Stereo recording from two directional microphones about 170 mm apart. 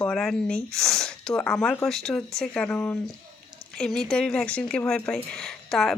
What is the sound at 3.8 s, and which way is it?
Speech, centre (ahead or behind).